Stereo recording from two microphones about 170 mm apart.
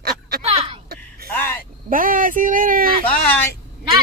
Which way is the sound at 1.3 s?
10° left (ahead or behind).